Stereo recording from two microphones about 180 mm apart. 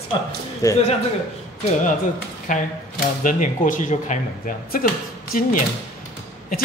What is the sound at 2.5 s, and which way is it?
Speech, 45° left (ahead or behind).